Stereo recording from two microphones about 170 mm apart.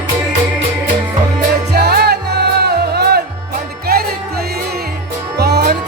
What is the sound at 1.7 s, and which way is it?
Music, 70° right (ahead or behind).